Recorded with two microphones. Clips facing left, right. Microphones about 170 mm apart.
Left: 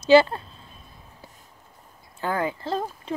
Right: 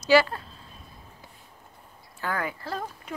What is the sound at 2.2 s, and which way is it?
Speech, 25° left (ahead or behind).